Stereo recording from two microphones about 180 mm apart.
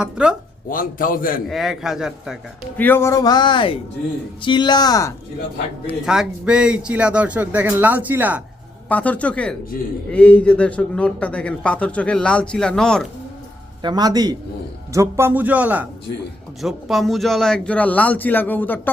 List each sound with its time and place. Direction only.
0.0 s speech: 5° right (ahead or behind)
0.7 s a man's voice: 50° left (ahead or behind)
1.5 s speech: centre (ahead or behind)
2.7 s a man's voice: 10° left (ahead or behind)
5.9 s speech: 5° right (ahead or behind)
8.9 s a man's voice: 10° left (ahead or behind)
13.8 s a man's voice: 20° right (ahead or behind); by 18.8 s 10° left (ahead or behind)